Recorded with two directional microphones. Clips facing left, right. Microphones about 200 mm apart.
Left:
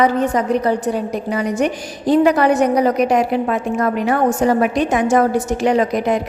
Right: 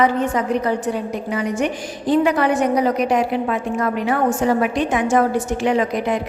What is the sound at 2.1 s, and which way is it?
A woman's voice, 40° left (ahead or behind).